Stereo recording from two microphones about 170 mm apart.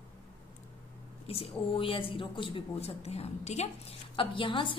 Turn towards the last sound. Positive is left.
turn(degrees=30)  # may be behind; listen again after turning